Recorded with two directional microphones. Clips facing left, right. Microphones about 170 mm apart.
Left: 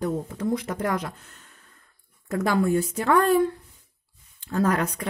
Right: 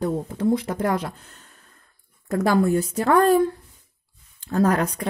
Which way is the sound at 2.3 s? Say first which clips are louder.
Right 3 dB; 35° right (ahead or behind).